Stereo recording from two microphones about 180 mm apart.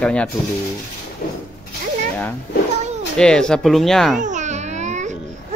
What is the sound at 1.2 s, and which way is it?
Speech, 55° left (ahead or behind).